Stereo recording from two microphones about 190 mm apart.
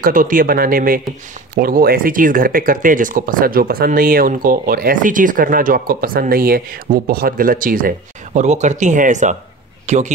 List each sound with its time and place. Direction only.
0.0 s a man's voice: 45° right (ahead or behind)